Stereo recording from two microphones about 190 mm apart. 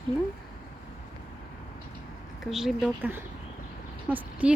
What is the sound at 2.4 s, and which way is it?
Speech, centre (ahead or behind).